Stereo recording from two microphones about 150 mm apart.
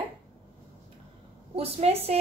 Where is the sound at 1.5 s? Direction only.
45° right (ahead or behind).